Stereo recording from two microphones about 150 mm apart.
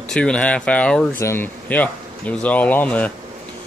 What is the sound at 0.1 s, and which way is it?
Speech, 5° left (ahead or behind).